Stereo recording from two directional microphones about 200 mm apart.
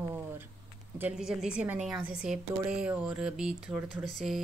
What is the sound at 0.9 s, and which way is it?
A woman's voice, 5° right (ahead or behind).